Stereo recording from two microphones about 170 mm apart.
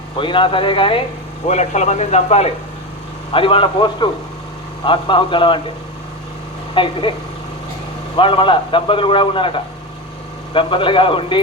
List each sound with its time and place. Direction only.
0.2 s a man's voice: 30° left (ahead or behind)
6.8 s a man's voice: 30° left (ahead or behind)
8.1 s a man's voice: 30° left (ahead or behind)